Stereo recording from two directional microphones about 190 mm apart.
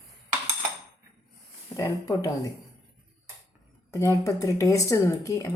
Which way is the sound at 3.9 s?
15° left (ahead or behind).